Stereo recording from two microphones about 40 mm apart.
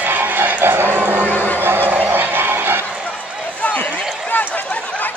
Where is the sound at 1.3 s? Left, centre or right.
Left.